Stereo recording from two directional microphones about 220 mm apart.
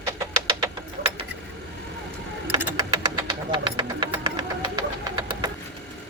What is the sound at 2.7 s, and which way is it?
Vehicle, 20° right (ahead or behind).